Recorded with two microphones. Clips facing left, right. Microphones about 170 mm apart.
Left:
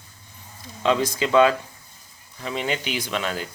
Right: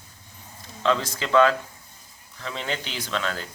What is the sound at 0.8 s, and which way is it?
Speech, 15° left (ahead or behind).